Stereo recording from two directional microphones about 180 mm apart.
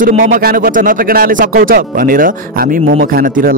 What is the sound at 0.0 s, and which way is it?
Speech, 50° right (ahead or behind).